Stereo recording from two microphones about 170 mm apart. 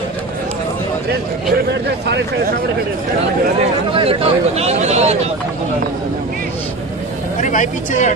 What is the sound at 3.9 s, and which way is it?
Speech, 35° right (ahead or behind).